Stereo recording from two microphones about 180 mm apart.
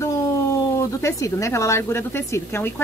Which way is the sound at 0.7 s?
15° left (ahead or behind).